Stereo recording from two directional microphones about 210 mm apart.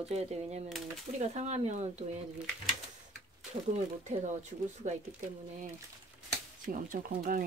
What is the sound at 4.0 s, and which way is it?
Speech, 35° right (ahead or behind).